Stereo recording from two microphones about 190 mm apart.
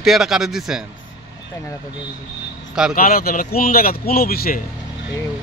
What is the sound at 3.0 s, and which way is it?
A man's voice, 50° left (ahead or behind).